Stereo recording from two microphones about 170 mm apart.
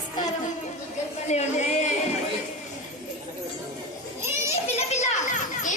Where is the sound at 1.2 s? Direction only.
45° left (ahead or behind).